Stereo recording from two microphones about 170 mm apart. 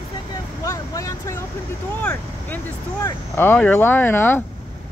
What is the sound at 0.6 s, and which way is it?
Vehicle, 20° left (ahead or behind).